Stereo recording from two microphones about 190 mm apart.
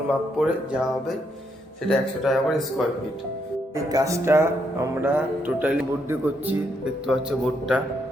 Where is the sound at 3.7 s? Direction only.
15° right (ahead or behind).